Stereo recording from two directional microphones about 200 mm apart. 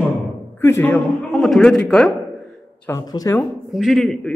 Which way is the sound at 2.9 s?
15° left (ahead or behind).